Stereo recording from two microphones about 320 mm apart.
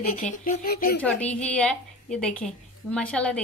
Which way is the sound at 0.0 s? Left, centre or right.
Left.